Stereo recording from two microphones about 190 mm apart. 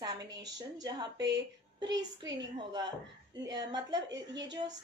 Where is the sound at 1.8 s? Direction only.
20° right (ahead or behind).